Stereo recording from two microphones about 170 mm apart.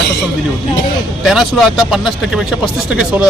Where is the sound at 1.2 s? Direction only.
Centre (ahead or behind).